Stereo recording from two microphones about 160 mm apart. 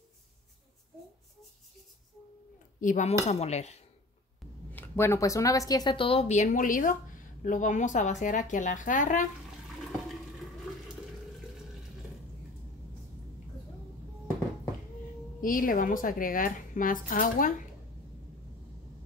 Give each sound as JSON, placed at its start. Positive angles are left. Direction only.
{"t": 2.8, "sound": "speech", "side_deg": 50}
{"t": 4.7, "sound": "speech", "side_deg": 15}
{"t": 15.4, "sound": "a woman's voice", "side_deg": 60}